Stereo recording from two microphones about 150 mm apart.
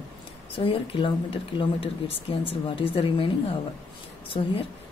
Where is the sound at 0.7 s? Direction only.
35° left (ahead or behind).